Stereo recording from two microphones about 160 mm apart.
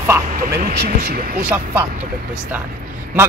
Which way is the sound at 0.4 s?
65° right (ahead or behind).